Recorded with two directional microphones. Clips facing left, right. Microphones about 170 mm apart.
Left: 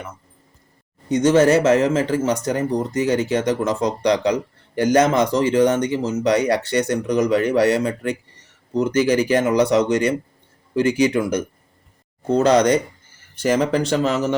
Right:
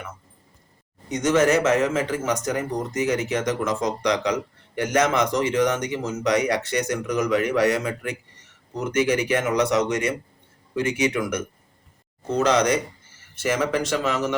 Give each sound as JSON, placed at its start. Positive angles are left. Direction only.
{"t": 1.0, "sound": "speech", "side_deg": 30}